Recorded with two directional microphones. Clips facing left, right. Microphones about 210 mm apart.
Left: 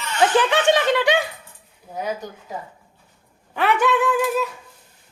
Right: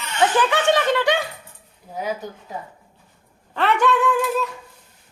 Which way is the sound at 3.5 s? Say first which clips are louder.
Even; 5° left (ahead or behind).